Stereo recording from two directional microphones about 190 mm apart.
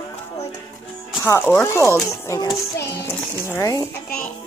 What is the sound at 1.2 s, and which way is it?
Speech, 15° left (ahead or behind).